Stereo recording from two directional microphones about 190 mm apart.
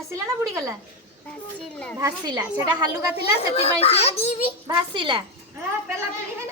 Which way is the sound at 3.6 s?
30° left (ahead or behind).